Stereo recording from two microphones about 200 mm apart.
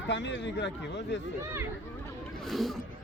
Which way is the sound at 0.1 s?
60° left (ahead or behind).